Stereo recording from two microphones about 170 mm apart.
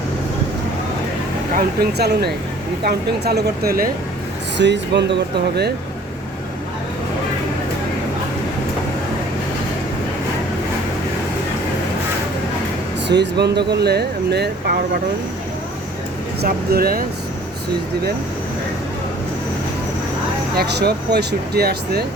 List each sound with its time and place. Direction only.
1.5 s speech: 65° right (ahead or behind)
4.5 s speech: 90° right
13.1 s speech: 85° right
16.4 s speech: 60° right (ahead or behind)
20.6 s speech: 75° right (ahead or behind)